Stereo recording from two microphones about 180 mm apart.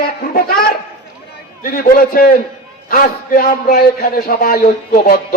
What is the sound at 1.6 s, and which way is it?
A man's voice, 55° left (ahead or behind).